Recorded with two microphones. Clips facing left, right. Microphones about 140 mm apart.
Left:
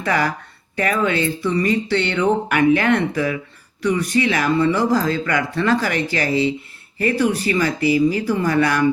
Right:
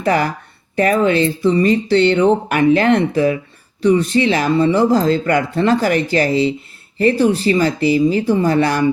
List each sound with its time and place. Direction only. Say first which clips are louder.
0.0 s speech: right 4 dB; 25° right (ahead or behind)